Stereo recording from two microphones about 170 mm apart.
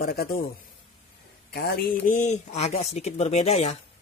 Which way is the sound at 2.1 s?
45° left (ahead or behind).